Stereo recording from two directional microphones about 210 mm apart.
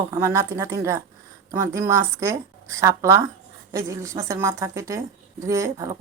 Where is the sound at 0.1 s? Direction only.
15° right (ahead or behind).